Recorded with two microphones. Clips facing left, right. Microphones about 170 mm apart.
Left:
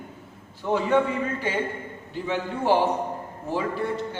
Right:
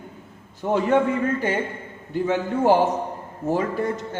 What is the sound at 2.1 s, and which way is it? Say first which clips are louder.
A man's voice: right 6 dB; 45° right (ahead or behind).